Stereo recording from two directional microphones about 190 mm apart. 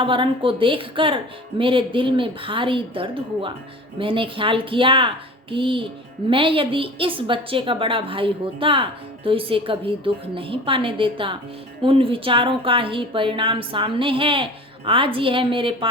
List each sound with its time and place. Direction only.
0.0 s a woman's voice: 25° right (ahead or behind)